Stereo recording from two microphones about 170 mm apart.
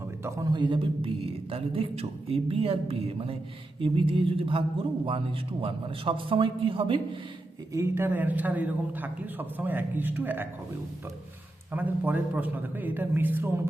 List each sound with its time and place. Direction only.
0.3 s a man's voice: 25° right (ahead or behind)
7.7 s a man's voice: 15° right (ahead or behind)
11.7 s a man's voice: 10° right (ahead or behind)